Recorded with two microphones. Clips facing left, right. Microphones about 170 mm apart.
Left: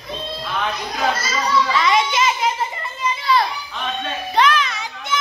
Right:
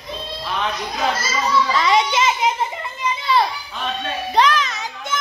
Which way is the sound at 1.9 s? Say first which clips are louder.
Right 1 dB; 25° right (ahead or behind).